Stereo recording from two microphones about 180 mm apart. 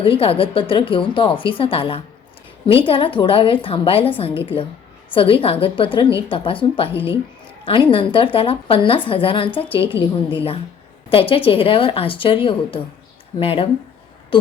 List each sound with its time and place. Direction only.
0.0 s a woman's voice: 30° left (ahead or behind)
5.1 s a woman's voice: 30° left (ahead or behind)